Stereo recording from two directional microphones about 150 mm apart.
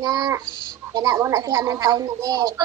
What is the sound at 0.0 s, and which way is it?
Speech, 25° right (ahead or behind).